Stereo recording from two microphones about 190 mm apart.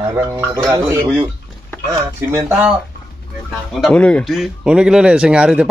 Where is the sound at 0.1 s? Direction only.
15° right (ahead or behind).